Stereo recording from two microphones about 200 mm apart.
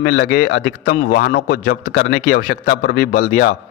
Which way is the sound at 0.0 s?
55° left (ahead or behind).